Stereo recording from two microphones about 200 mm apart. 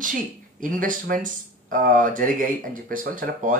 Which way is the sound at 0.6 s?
40° right (ahead or behind).